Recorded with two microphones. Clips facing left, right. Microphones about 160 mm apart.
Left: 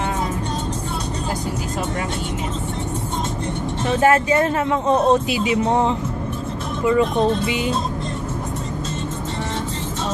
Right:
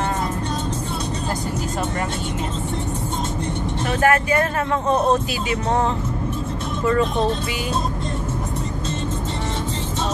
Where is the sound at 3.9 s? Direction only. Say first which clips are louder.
Left 2 dB; 25° left (ahead or behind).